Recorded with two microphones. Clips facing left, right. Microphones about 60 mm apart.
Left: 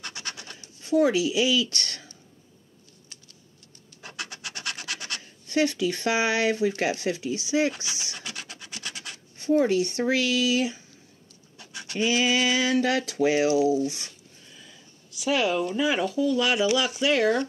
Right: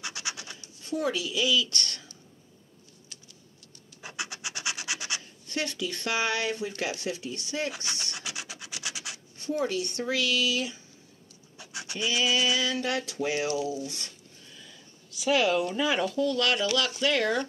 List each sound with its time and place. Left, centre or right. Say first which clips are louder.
0.0 s scratch: right 1 dB; centre
0.8 s speech: left 8 dB; left
4.0 s rub: even; centre
5.5 s speech: left 8 dB; left
7.2 s speech: left 7 dB; left
7.9 s speech: even; centre
8.2 s scratch: even; centre
9.4 s speech: left 8 dB; left
11.5 s scratch: left 2 dB; centre
12.0 s a sound: left 4 dB; left
13.2 s speech: left 9 dB; left
15.1 s speech: even; centre